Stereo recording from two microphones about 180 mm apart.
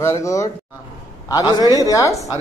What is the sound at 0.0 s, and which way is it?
A man's voice, 15° left (ahead or behind).